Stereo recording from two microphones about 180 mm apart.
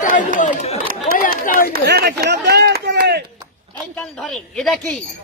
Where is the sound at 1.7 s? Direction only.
60° right (ahead or behind).